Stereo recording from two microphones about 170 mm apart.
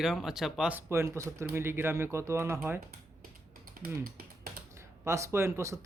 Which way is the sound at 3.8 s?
55° right (ahead or behind).